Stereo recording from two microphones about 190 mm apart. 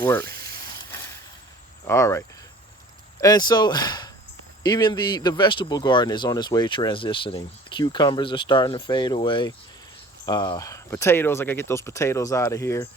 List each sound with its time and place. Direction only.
0.0 s speech: 15° left (ahead or behind)
1.8 s speech: 15° left (ahead or behind)